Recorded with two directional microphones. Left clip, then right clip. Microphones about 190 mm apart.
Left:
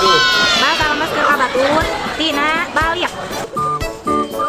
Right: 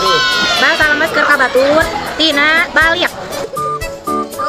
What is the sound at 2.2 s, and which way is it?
Speech, 25° right (ahead or behind).